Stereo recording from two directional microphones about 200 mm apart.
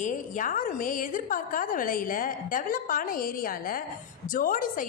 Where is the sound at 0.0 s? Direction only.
40° left (ahead or behind).